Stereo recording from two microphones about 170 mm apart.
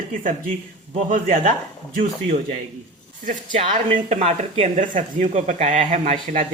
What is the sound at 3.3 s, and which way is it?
Speech, 35° right (ahead or behind).